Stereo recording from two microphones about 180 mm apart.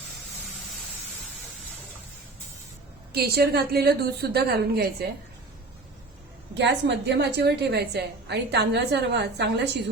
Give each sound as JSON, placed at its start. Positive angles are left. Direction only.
{"t": 3.1, "sound": "a woman's voice", "side_deg": -60}
{"t": 6.5, "sound": "a woman's voice", "side_deg": -75}